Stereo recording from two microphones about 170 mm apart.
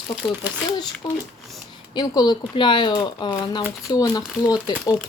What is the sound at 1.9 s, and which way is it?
Speech, 25° left (ahead or behind).